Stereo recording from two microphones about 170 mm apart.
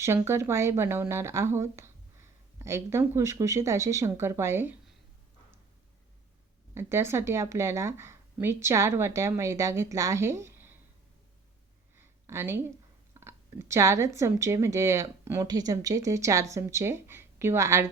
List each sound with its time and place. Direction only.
0.0 s speech: 15° right (ahead or behind)
6.7 s speech: 15° right (ahead or behind)
11.9 s a sound: 15° right (ahead or behind)
13.1 s speech: 15° right (ahead or behind)